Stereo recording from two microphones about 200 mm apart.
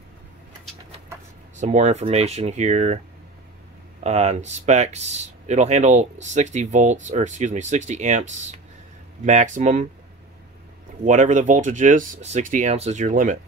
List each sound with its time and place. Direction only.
1.6 s speech: 35° right (ahead or behind)
4.0 s speech: 35° right (ahead or behind)
11.1 s speech: 35° right (ahead or behind)